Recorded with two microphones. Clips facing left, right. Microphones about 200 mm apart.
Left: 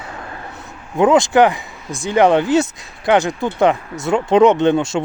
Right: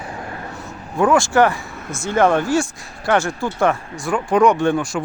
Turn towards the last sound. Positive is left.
turn(degrees=25)  # may be behind; listen again after turning